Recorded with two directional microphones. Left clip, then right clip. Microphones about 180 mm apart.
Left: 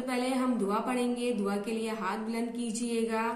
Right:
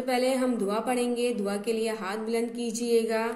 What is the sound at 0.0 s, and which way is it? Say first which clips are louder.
A woman's voice: right 5 dB; 15° left (ahead or behind).